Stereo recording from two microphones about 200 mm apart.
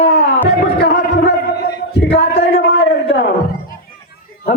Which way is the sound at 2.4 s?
55° left (ahead or behind).